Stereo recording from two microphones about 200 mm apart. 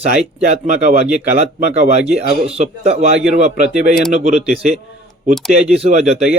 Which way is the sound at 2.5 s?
30° right (ahead or behind).